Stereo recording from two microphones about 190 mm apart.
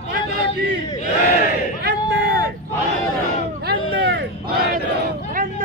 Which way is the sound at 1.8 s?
60° right (ahead or behind).